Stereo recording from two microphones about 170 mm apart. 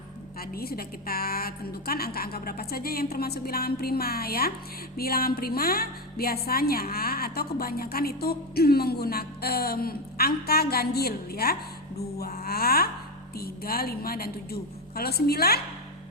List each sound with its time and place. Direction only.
0.3 s speech: 65° left (ahead or behind)